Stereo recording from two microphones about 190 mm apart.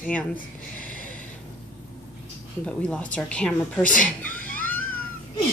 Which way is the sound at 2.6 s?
5° left (ahead or behind).